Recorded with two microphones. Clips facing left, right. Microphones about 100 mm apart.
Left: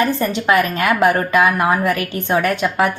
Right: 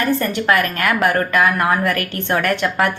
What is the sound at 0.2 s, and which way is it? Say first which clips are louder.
A woman's voice: left 1 dB; 15° left (ahead or behind).